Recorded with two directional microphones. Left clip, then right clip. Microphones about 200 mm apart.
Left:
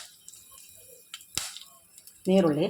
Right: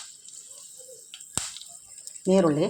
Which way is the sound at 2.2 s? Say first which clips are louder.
Right 2 dB; 15° right (ahead or behind).